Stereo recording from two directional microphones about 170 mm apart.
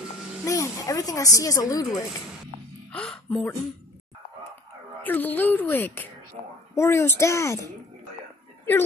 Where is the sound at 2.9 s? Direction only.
5° left (ahead or behind).